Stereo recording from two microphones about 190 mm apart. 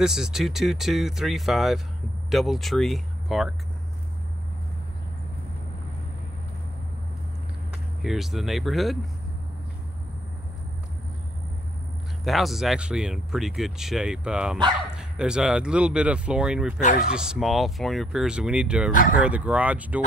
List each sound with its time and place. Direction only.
0.0 s speech: 5° right (ahead or behind)
8.0 s speech: centre (ahead or behind)
12.3 s speech: centre (ahead or behind)
18.9 s speech: 45° left (ahead or behind)
19.2 s speech: 5° right (ahead or behind)